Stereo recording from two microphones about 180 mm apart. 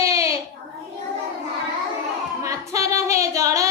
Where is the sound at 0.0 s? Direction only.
15° right (ahead or behind).